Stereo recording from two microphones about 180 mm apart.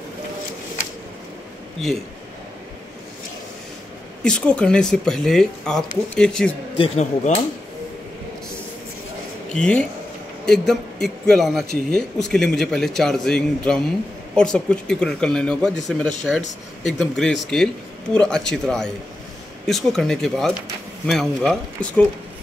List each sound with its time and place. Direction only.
4.2 s speech: 5° left (ahead or behind)
6.8 s speech: 35° left (ahead or behind)
9.5 s a man's voice: 5° left (ahead or behind)